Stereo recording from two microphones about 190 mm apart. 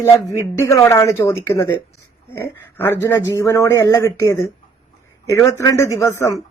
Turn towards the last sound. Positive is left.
turn(degrees=15)  # may be behind; listen again after turning